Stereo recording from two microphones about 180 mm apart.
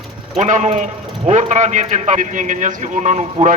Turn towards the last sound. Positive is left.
turn(degrees=-40)  # may be behind; listen again after turning